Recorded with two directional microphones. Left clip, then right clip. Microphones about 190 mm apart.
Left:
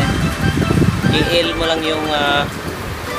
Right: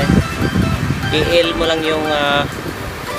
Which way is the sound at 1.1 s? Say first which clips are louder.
Right 3 dB; 25° right (ahead or behind).